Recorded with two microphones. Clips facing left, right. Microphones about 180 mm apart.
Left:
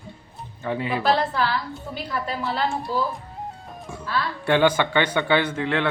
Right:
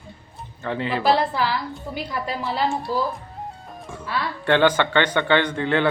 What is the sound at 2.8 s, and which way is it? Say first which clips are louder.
Speech: right 1 dB; centre (ahead or behind).